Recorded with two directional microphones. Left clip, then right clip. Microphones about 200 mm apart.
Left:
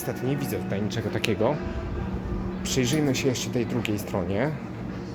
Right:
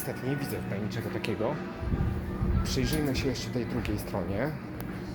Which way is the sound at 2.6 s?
20° left (ahead or behind).